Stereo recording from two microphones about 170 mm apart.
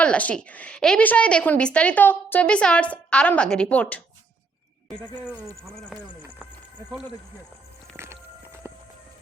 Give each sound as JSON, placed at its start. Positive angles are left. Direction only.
{"t": 0.0, "sound": "a woman's voice", "side_deg": 5}
{"t": 5.6, "sound": "speech", "side_deg": 0}
{"t": 7.9, "sound": "vehicle", "side_deg": -15}
{"t": 8.7, "sound": "horse", "side_deg": -15}